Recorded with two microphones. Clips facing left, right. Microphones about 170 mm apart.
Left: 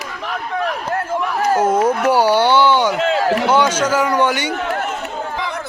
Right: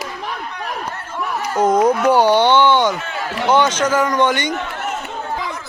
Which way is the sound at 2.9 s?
90° left.